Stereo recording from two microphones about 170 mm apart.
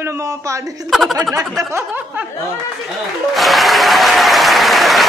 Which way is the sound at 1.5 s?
15° right (ahead or behind).